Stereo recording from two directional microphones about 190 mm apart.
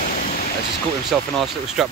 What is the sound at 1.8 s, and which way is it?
Speech, centre (ahead or behind).